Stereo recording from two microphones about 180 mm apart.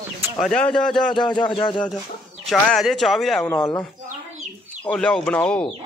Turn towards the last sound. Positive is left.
turn(degrees=5)  # may be behind; listen again after turning